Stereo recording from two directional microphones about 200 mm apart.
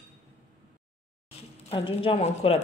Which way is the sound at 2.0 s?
30° left (ahead or behind).